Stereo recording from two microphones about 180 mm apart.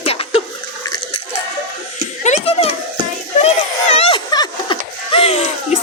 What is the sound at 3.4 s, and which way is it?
Laughter, 35° left (ahead or behind).